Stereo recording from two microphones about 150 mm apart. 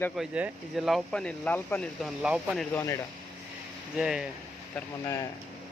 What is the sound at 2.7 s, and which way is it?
Speech, 20° left (ahead or behind).